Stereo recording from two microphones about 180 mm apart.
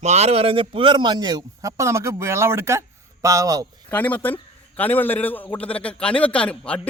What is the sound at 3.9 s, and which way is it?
Speech, 10° left (ahead or behind).